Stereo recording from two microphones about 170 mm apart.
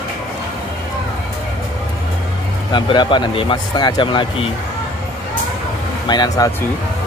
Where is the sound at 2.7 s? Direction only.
25° left (ahead or behind).